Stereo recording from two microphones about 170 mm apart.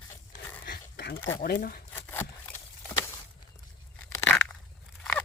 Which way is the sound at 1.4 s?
55° left (ahead or behind).